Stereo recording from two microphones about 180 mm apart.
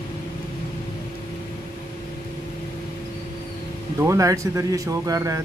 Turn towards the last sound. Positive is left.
turn(degrees=-20)  # may be behind; listen again after turning